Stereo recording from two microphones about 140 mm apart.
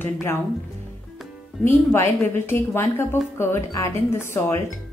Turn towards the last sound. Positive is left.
turn(degrees=20)  # may be behind; listen again after turning